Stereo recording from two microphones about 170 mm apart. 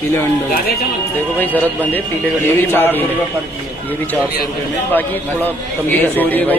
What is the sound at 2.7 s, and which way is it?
Speech, 10° left (ahead or behind).